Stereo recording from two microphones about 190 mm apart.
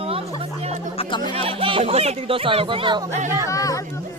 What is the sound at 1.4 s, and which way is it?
Speech, 30° right (ahead or behind).